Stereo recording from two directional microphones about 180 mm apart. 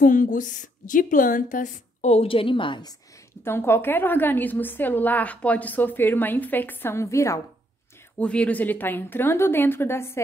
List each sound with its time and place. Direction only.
0.0 s a woman's voice: 45° left (ahead or behind); by 3.0 s 25° left (ahead or behind)
3.4 s a woman's voice: 15° left (ahead or behind)